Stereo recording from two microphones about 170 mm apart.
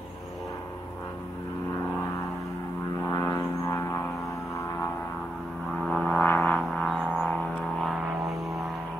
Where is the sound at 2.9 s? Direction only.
20° left (ahead or behind).